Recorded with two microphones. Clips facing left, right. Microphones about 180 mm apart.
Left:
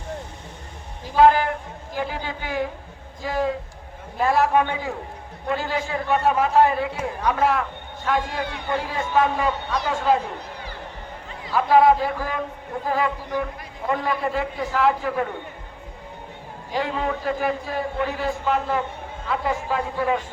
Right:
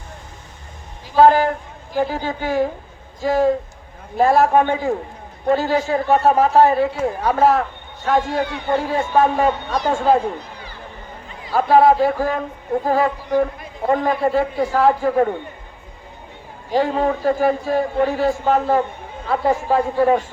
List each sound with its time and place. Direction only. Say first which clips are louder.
1.1 s a man's voice: right 3 dB; 40° right (ahead or behind)
11.5 s a man's voice: right 3 dB; 40° right (ahead or behind)
16.7 s a man's voice: right 7 dB; 40° right (ahead or behind)